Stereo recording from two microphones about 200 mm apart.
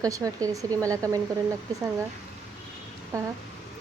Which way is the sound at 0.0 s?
15° right (ahead or behind).